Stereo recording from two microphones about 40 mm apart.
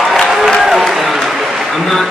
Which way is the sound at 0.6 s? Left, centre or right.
Centre.